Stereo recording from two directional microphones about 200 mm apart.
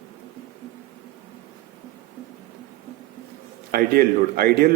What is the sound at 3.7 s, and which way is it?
Speech, 50° right (ahead or behind).